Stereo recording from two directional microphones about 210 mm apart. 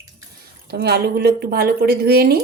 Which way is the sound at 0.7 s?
50° right (ahead or behind).